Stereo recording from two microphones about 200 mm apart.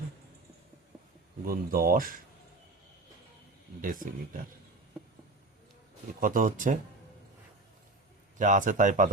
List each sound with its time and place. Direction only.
1.5 s speech: 45° right (ahead or behind)
3.8 s speech: 45° right (ahead or behind)
6.1 s speech: 40° right (ahead or behind)
8.4 s speech: 40° right (ahead or behind)